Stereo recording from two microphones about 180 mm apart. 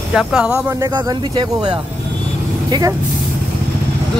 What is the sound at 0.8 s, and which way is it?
Speech, 20° right (ahead or behind).